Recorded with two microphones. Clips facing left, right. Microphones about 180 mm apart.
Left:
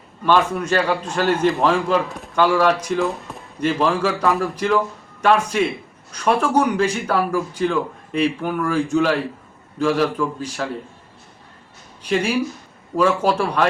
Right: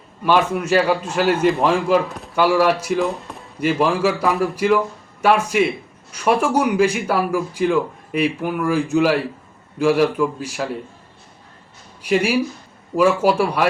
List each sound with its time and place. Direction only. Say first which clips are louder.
0.3 s a man's voice: right 1 dB; 10° right (ahead or behind)
12.0 s a man's voice: right 2 dB; 10° right (ahead or behind)